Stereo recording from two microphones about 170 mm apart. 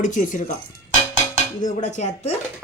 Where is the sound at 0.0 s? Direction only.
50° left (ahead or behind).